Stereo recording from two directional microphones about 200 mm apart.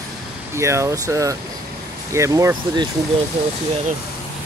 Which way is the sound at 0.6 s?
15° right (ahead or behind).